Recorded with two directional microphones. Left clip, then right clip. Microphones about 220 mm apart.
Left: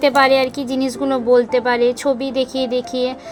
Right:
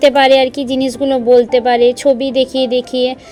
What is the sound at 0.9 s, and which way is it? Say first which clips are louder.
Speech: right 5 dB; 25° right (ahead or behind).